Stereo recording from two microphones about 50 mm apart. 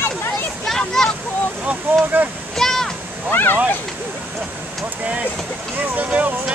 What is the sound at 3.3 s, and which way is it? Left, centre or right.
Speech, left.